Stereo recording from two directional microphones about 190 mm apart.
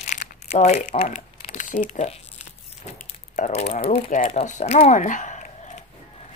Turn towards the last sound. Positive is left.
turn(degrees=40)  # may be behind; listen again after turning